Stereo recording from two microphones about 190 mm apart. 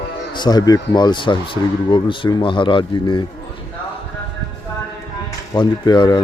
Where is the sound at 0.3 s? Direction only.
20° left (ahead or behind).